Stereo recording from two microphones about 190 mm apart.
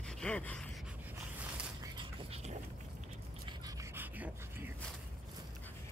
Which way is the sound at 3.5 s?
20° right (ahead or behind).